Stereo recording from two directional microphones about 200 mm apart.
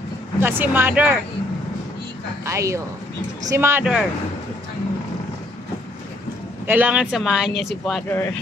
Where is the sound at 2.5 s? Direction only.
15° right (ahead or behind).